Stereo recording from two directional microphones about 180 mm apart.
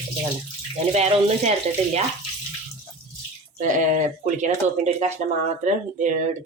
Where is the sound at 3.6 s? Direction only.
45° right (ahead or behind).